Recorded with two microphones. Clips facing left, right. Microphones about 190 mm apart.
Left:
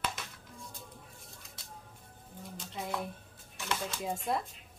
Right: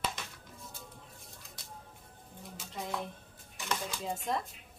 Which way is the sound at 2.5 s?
5° left (ahead or behind).